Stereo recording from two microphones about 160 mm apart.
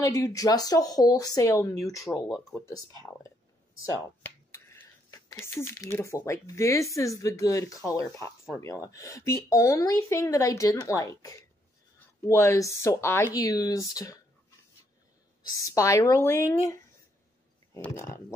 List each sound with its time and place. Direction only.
0.0 s speech: 20° left (ahead or behind)
2.2 s speech: centre (ahead or behind)
3.0 s speech: 20° left (ahead or behind)
15.5 s speech: 20° left (ahead or behind)
17.8 s speech: 15° left (ahead or behind)